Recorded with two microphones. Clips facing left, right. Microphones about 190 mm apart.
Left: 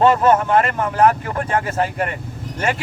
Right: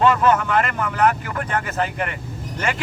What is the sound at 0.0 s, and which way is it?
Speech, 30° left (ahead or behind).